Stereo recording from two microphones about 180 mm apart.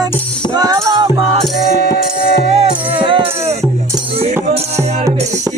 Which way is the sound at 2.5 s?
35° right (ahead or behind).